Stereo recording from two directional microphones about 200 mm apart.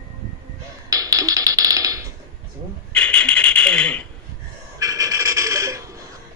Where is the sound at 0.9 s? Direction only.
15° right (ahead or behind).